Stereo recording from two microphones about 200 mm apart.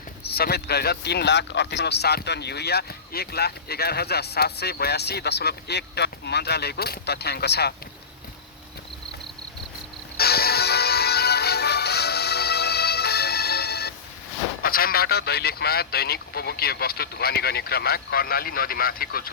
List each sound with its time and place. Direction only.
0.3 s speech: 50° left (ahead or behind)
10.2 s music: 50° left (ahead or behind)
14.6 s speech: 45° left (ahead or behind)